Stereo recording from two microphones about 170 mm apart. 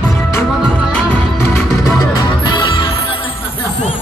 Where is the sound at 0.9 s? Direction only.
5° left (ahead or behind); by 3.2 s 25° left (ahead or behind).